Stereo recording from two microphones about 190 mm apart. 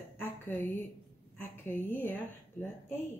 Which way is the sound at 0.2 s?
10° left (ahead or behind).